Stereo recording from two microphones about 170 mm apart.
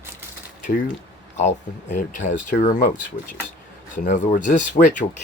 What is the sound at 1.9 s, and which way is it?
Speech, 45° left (ahead or behind).